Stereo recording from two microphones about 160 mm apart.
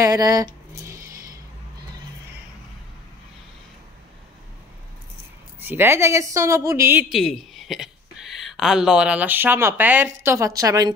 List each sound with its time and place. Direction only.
0.0 s speech: 25° right (ahead or behind)
5.6 s a woman's voice: 15° right (ahead or behind)
7.1 s speech: centre (ahead or behind); by 10.9 s 20° right (ahead or behind)